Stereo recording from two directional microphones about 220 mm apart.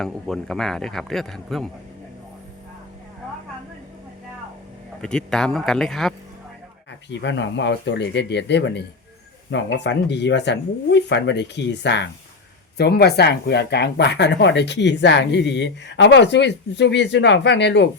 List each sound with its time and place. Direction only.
0.0 s speech: centre (ahead or behind)
5.0 s speech: 5° left (ahead or behind)
7.1 s speech: 55° left (ahead or behind)